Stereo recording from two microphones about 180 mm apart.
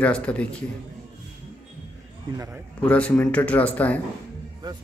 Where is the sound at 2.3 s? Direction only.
20° right (ahead or behind).